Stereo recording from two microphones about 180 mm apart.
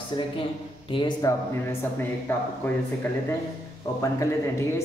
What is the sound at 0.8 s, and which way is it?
Speech, 30° left (ahead or behind).